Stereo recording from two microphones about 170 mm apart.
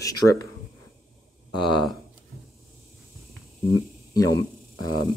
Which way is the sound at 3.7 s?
20° left (ahead or behind).